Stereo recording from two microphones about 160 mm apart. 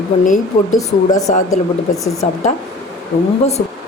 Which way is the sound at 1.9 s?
20° left (ahead or behind).